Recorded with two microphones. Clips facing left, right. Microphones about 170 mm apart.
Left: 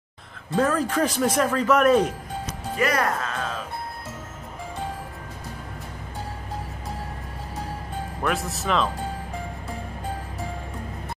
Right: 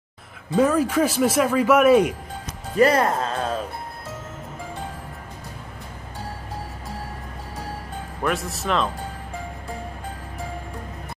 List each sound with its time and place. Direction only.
0.6 s a man's voice: 10° right (ahead or behind)
2.8 s speech: 25° right (ahead or behind)
8.2 s speech: centre (ahead or behind)